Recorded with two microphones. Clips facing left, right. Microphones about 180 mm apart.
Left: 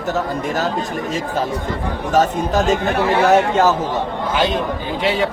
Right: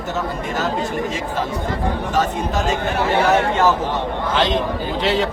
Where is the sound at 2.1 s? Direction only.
40° left (ahead or behind).